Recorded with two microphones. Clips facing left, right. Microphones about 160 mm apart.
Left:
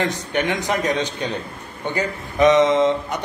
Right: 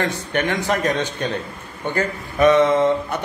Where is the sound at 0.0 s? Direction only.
15° left (ahead or behind).